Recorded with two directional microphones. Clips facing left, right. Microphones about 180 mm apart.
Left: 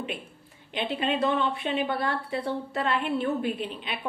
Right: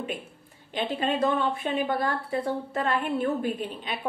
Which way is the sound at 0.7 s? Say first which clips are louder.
Right 1 dB; 45° right (ahead or behind).